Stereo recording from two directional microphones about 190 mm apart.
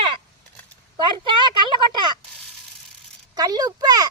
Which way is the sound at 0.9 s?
25° right (ahead or behind).